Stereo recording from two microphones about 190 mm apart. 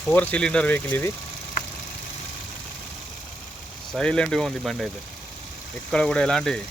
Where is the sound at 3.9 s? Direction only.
5° left (ahead or behind).